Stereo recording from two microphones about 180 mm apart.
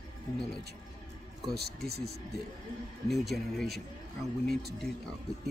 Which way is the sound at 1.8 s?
60° right (ahead or behind).